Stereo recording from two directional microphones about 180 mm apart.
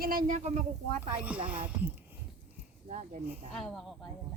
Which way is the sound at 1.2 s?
10° right (ahead or behind).